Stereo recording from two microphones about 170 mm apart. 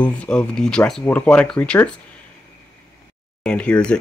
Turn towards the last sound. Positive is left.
turn(degrees=5)  # may be behind; listen again after turning